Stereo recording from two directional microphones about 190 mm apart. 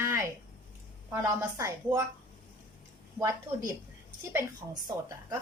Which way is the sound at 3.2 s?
15° right (ahead or behind).